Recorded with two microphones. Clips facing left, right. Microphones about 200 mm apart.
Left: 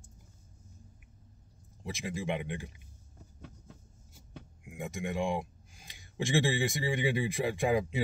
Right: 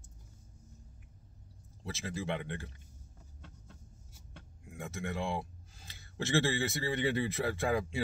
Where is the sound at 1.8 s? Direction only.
15° left (ahead or behind).